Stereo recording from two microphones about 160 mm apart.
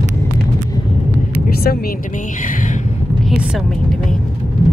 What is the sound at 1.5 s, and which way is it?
Vehicle, 70° left (ahead or behind).